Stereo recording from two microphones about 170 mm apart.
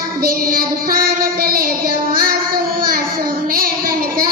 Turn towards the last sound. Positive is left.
turn(degrees=-60)  # may be behind; listen again after turning